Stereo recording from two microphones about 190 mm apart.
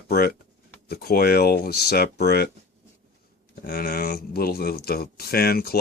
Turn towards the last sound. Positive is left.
turn(degrees=55)  # may be behind; listen again after turning